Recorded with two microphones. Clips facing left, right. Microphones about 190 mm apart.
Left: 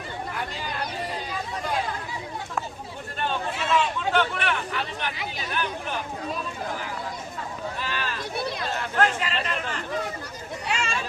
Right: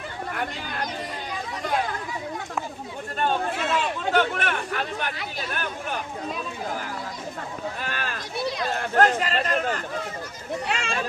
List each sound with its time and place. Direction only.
3.2 s speech: 45° right (ahead or behind)
7.8 s run: 50° right (ahead or behind)
8.7 s speech: 45° right (ahead or behind)
10.7 s a sound: 55° right (ahead or behind)